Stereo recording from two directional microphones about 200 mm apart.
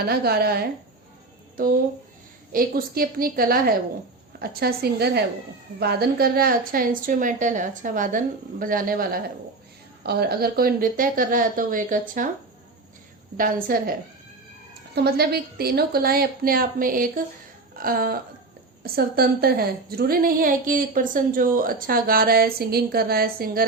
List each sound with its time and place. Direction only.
0.0 s a woman's voice: 50° right (ahead or behind)
13.3 s a woman's voice: 45° right (ahead or behind)
14.9 s a woman's voice: 50° right (ahead or behind)